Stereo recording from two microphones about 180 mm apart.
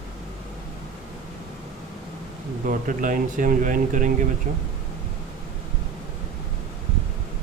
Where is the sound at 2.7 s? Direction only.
50° right (ahead or behind).